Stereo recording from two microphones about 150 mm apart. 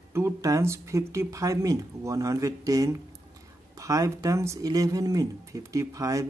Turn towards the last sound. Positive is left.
turn(degrees=-20)  # may be behind; listen again after turning